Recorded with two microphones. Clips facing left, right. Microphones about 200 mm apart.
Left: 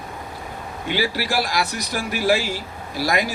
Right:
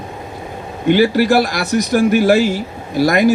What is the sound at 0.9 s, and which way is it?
A man's voice, 55° right (ahead or behind).